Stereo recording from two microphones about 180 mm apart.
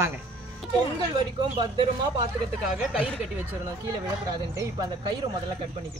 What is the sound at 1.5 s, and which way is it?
Speech, 25° right (ahead or behind).